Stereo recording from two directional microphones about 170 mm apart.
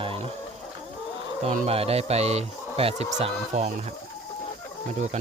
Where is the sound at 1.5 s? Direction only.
35° right (ahead or behind).